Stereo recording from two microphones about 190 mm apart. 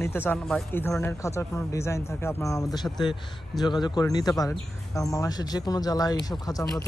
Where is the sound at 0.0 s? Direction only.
10° left (ahead or behind).